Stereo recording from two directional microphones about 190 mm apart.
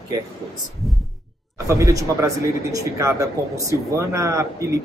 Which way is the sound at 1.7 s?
15° right (ahead or behind).